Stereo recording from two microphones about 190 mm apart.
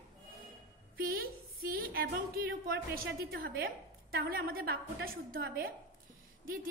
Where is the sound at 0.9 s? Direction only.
50° right (ahead or behind).